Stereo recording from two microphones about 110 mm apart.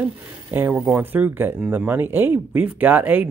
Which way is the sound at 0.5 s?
20° right (ahead or behind).